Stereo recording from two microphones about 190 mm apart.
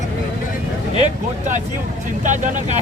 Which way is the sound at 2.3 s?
40° right (ahead or behind).